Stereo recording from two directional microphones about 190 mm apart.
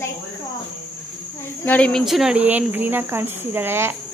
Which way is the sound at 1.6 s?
5° left (ahead or behind).